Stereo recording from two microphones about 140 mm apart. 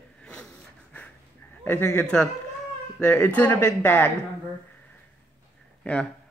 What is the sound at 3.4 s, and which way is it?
Speech, 15° left (ahead or behind).